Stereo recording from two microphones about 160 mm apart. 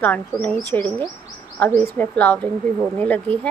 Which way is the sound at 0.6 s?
20° right (ahead or behind).